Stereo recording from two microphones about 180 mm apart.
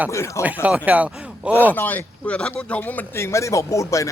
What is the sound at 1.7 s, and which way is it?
Speech, 10° left (ahead or behind).